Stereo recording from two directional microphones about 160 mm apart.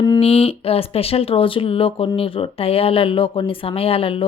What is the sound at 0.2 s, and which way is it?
Speech, 40° left (ahead or behind).